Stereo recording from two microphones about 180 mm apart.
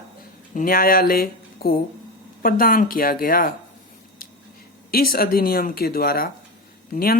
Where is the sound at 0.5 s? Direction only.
50° left (ahead or behind).